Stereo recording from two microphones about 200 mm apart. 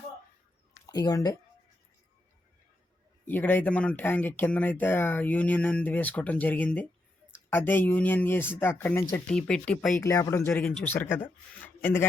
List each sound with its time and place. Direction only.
0.9 s speech: 20° left (ahead or behind)
3.2 s speech: 10° left (ahead or behind)
10.0 s speech: 15° left (ahead or behind)
10.5 s speech: 5° left (ahead or behind)